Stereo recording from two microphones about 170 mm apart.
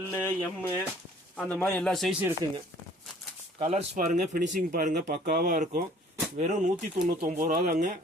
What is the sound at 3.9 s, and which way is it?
Speech, 50° right (ahead or behind).